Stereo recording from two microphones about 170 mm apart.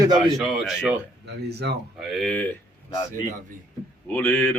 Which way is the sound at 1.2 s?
75° right (ahead or behind).